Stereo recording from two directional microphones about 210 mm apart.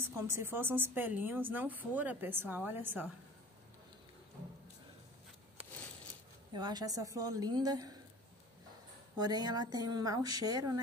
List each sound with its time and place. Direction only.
0.3 s speech: 10° right (ahead or behind)
6.5 s speech: 20° right (ahead or behind)
9.1 s speech: 20° right (ahead or behind)